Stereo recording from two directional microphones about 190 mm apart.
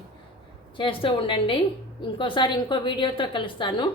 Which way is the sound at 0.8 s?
25° left (ahead or behind).